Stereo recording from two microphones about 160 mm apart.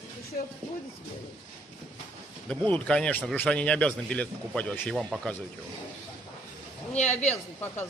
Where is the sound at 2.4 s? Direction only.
10° left (ahead or behind).